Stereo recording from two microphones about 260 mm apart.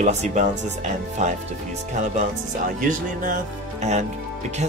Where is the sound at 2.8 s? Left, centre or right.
Right.